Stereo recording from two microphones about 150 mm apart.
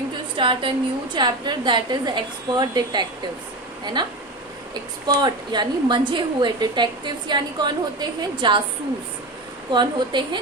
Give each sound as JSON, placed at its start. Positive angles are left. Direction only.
{"t": 0.3, "sound": "a woman's voice", "side_deg": -35}
{"t": 5.0, "sound": "a woman's voice", "side_deg": -30}
{"t": 9.7, "sound": "a woman's voice", "side_deg": -30}